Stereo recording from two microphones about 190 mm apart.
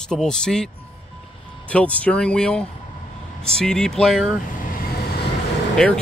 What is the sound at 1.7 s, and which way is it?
Speech, 5° left (ahead or behind).